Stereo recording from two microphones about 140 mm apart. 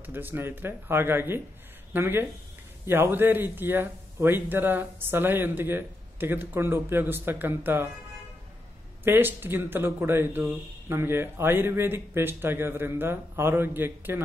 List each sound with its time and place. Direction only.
0.0 s speech: 15° right (ahead or behind)
9.0 s speech: 15° right (ahead or behind)